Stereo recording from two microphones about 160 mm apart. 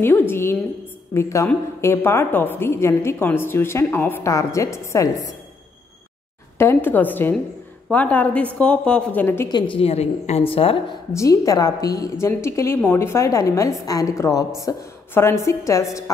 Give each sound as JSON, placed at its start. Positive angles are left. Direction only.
{"t": 0.0, "sound": "a woman's voice", "side_deg": 15}
{"t": 6.6, "sound": "a woman's voice", "side_deg": 15}
{"t": 9.5, "sound": "a woman's voice", "side_deg": 30}
{"t": 11.1, "sound": "a woman's voice", "side_deg": 20}